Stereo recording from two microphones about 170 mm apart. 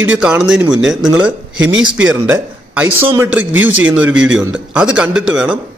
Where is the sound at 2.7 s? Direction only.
10° right (ahead or behind).